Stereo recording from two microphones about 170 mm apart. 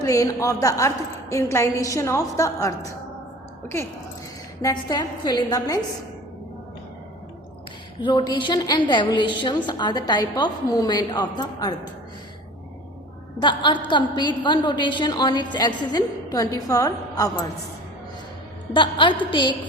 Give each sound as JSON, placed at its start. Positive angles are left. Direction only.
{"t": 0.0, "sound": "a woman's voice", "side_deg": 20}
{"t": 4.6, "sound": "a woman's voice", "side_deg": 25}
{"t": 8.0, "sound": "a woman's voice", "side_deg": 25}
{"t": 13.4, "sound": "a woman's voice", "side_deg": 25}
{"t": 18.7, "sound": "a woman's voice", "side_deg": 30}